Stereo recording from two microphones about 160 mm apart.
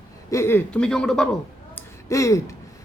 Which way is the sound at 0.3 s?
15° left (ahead or behind).